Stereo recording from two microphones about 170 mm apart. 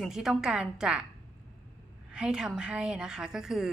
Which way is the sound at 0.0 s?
Centre (ahead or behind).